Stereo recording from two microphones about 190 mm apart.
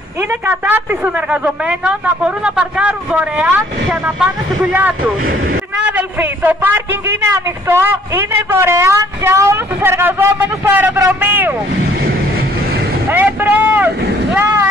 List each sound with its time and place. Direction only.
0.5 s a man's voice: 10° right (ahead or behind)
13.1 s vehicle: 10° right (ahead or behind)